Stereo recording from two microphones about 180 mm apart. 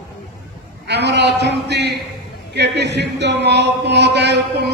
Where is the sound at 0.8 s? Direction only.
70° right (ahead or behind).